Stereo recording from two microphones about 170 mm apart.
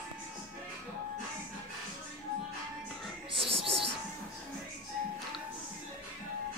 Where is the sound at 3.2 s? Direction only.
30° right (ahead or behind).